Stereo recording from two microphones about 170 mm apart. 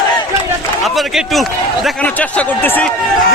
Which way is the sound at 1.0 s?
Centre (ahead or behind).